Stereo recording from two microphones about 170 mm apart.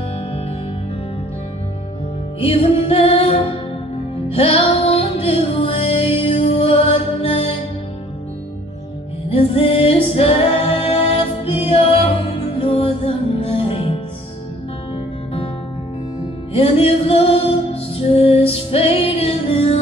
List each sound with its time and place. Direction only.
2.4 s music: 35° left (ahead or behind)
9.3 s music: 35° left (ahead or behind)
16.5 s music: 35° left (ahead or behind)